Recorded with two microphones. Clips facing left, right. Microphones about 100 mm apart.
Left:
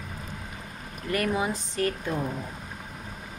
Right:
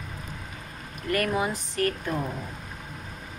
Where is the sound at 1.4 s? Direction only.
20° left (ahead or behind).